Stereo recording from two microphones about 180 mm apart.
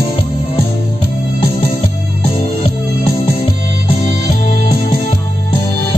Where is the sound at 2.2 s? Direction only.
30° left (ahead or behind).